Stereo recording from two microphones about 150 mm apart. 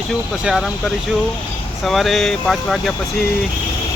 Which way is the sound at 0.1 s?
Centre (ahead or behind).